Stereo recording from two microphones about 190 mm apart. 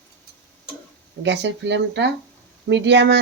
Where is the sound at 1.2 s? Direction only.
65° right (ahead or behind).